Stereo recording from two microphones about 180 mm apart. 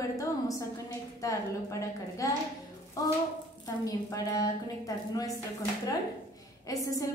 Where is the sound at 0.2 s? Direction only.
20° left (ahead or behind).